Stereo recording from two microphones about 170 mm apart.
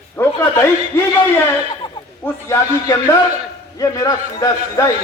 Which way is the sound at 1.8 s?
30° left (ahead or behind).